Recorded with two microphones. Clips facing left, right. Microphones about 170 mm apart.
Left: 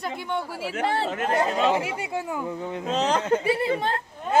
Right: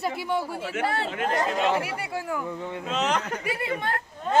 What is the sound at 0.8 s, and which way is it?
Speech, 35° left (ahead or behind).